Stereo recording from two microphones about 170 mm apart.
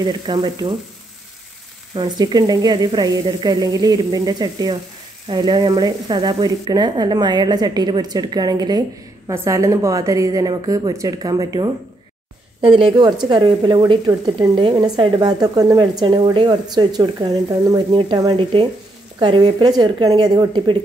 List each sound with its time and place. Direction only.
0.0 s a woman's voice: 25° right (ahead or behind)
2.0 s a woman's voice: 25° right (ahead or behind)